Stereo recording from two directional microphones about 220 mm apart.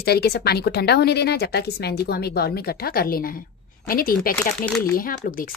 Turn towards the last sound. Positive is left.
turn(degrees=40)  # may be behind; listen again after turning